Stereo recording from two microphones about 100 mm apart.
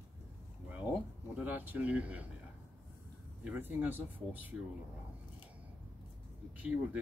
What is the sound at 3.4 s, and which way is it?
Speech, 20° right (ahead or behind).